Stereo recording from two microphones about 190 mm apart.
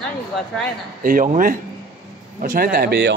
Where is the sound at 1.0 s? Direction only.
45° right (ahead or behind).